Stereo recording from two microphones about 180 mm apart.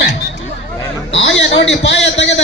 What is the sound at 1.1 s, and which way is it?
A man's voice, 90° left.